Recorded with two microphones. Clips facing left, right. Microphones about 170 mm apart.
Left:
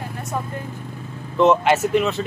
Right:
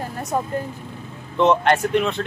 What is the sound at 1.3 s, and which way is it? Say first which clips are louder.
Speech: left 1 dB; 5° left (ahead or behind).